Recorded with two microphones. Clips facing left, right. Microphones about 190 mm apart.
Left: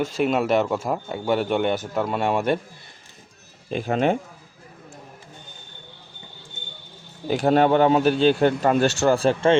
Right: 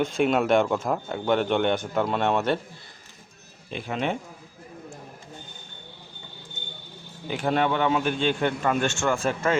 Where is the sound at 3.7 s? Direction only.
45° left (ahead or behind).